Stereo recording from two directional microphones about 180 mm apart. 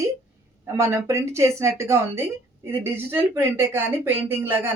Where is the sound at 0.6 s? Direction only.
15° right (ahead or behind).